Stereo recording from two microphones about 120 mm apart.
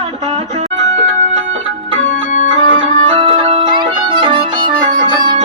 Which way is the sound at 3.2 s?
45° right (ahead or behind).